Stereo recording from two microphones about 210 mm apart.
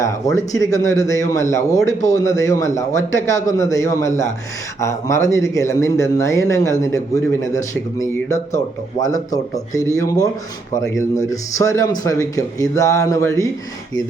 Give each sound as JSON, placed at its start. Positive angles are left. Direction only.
{"t": 0.0, "sound": "a man's voice", "side_deg": 15}
{"t": 1.9, "sound": "speech", "side_deg": 35}
{"t": 2.1, "sound": "a man's voice", "side_deg": 15}